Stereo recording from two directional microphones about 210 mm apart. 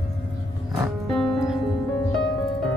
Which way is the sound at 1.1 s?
Centre (ahead or behind).